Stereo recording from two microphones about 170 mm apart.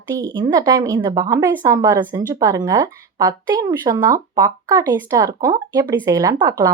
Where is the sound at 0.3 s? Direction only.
25° right (ahead or behind).